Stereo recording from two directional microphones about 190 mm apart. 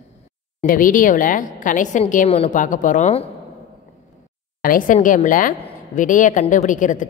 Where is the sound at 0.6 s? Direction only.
45° left (ahead or behind).